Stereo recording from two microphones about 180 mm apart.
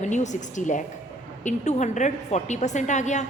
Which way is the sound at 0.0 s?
40° left (ahead or behind).